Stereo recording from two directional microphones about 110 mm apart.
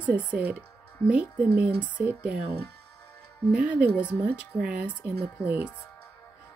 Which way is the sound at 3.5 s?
10° right (ahead or behind).